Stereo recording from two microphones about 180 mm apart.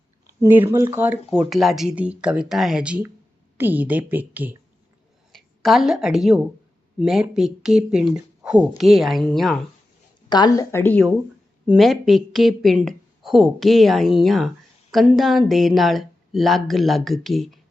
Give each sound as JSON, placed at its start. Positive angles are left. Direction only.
{"t": 0.4, "sound": "a woman's voice", "side_deg": -10}
{"t": 10.2, "sound": "a woman's voice", "side_deg": 25}
{"t": 11.6, "sound": "speech", "side_deg": -5}